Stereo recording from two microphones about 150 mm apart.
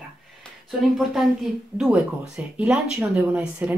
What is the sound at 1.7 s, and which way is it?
Speech, 5° right (ahead or behind).